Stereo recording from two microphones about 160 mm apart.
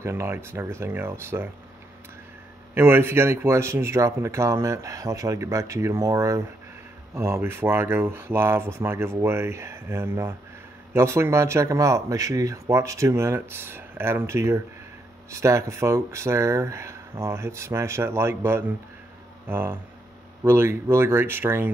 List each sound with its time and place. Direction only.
0.0 s speech: 15° right (ahead or behind)
2.7 s speech: 15° right (ahead or behind)